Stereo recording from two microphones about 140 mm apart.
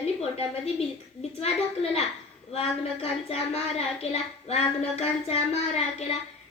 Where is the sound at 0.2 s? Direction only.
50° left (ahead or behind).